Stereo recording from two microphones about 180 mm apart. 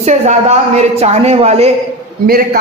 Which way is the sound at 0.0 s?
40° right (ahead or behind).